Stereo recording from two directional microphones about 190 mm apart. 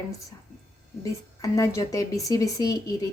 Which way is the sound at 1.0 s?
15° left (ahead or behind).